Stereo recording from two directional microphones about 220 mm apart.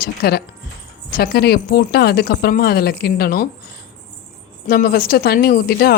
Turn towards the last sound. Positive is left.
turn(degrees=45)  # may be behind; listen again after turning